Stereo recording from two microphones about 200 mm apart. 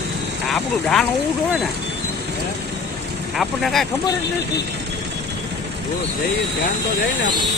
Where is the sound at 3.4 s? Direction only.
Centre (ahead or behind).